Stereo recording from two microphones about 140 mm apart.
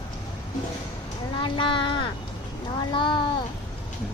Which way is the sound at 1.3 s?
35° left (ahead or behind).